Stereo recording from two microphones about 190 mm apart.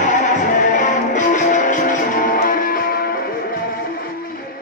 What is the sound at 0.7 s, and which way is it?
Music, 40° left (ahead or behind).